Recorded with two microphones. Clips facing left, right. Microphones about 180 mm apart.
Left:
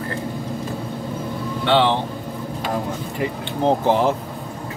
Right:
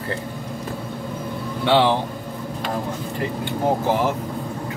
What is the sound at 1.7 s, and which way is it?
Speech, 10° right (ahead or behind).